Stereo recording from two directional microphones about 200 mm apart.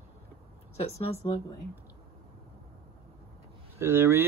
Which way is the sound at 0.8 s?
30° left (ahead or behind).